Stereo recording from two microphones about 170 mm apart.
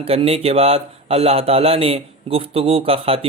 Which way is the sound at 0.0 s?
35° right (ahead or behind).